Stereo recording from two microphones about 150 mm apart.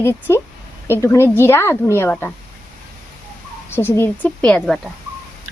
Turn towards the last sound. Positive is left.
turn(degrees=5)  # may be behind; listen again after turning